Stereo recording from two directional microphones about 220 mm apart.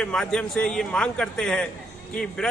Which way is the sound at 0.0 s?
5° left (ahead or behind).